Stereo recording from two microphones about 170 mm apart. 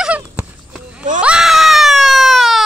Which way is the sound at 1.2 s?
5° right (ahead or behind).